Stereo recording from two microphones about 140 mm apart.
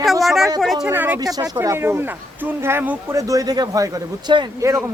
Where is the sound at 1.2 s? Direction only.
25° right (ahead or behind).